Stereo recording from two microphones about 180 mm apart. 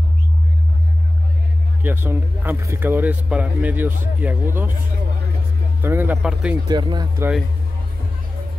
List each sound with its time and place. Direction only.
1.8 s speech: 10° right (ahead or behind)
5.8 s speech: 10° right (ahead or behind)
6.7 s speech: 20° right (ahead or behind)